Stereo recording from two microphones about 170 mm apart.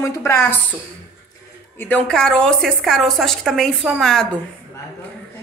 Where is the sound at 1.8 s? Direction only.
10° left (ahead or behind).